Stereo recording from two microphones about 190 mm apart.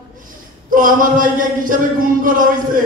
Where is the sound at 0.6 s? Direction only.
45° right (ahead or behind).